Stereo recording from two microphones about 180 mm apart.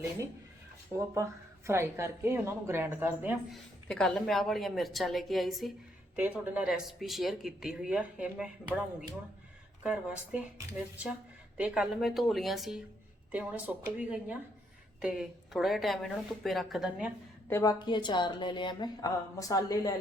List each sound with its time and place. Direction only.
0.9 s a woman's voice: 15° right (ahead or behind)
3.5 s speech: 5° left (ahead or behind)
9.8 s a woman's voice: 5° right (ahead or behind)
17.5 s a woman's voice: 20° left (ahead or behind)